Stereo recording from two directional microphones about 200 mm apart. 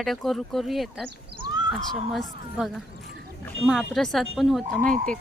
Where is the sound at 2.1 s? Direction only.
Centre (ahead or behind).